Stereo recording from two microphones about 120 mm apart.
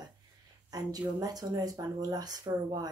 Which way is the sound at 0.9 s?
30° right (ahead or behind).